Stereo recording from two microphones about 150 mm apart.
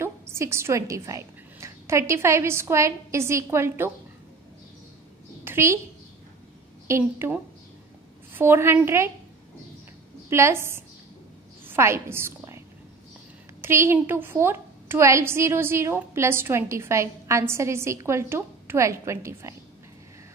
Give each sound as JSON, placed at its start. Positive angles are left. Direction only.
{"t": 0.0, "sound": "a woman's voice", "side_deg": -15}
{"t": 5.4, "sound": "a sound", "side_deg": -15}
{"t": 6.9, "sound": "a woman's voice", "side_deg": -15}
{"t": 10.3, "sound": "a woman's voice", "side_deg": -15}